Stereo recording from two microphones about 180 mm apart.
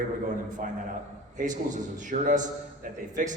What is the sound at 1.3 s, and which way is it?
A man's voice, 45° right (ahead or behind).